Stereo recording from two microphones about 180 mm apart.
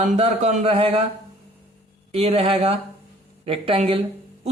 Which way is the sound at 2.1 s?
35° right (ahead or behind).